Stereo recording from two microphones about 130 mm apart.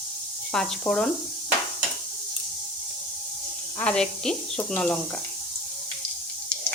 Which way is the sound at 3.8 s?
5° left (ahead or behind).